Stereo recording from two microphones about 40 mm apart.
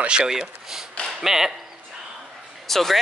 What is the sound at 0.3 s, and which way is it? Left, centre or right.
Speech, centre.